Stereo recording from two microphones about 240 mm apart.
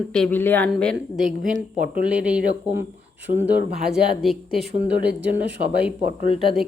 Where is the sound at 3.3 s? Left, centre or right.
Left.